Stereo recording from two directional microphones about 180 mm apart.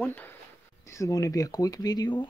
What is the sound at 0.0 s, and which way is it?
Speech, 10° left (ahead or behind).